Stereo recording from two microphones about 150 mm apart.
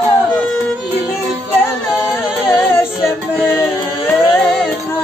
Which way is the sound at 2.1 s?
15° left (ahead or behind).